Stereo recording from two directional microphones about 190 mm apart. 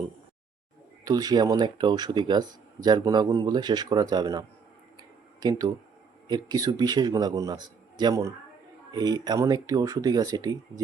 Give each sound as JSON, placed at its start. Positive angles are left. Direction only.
{"t": 1.0, "sound": "speech", "side_deg": -20}